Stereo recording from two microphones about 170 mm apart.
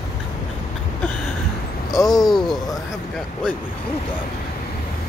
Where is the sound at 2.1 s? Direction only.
Centre (ahead or behind).